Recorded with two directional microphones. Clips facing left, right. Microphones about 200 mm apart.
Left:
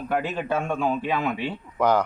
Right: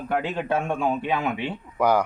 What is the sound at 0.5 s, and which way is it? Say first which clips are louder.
A man's voice: even; 20° right (ahead or behind).